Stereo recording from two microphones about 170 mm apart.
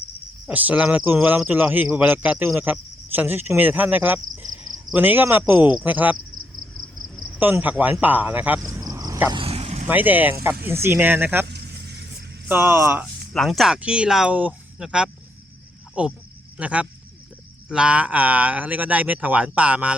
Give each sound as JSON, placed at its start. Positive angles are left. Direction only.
{"t": 0.4, "sound": "speech", "side_deg": -10}
{"t": 7.3, "sound": "speech", "side_deg": -10}
{"t": 8.6, "sound": "a sound", "side_deg": -20}
{"t": 9.3, "sound": "vehicle", "side_deg": -35}
{"t": 9.9, "sound": "speech", "side_deg": -10}
{"t": 11.4, "sound": "a sound", "side_deg": -75}
{"t": 12.5, "sound": "speech", "side_deg": -15}
{"t": 13.3, "sound": "speech", "side_deg": 0}